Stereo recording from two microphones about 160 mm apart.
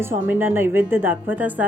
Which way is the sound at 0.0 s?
15° right (ahead or behind).